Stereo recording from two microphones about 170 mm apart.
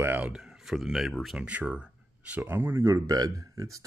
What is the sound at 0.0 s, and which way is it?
Speech, 10° right (ahead or behind).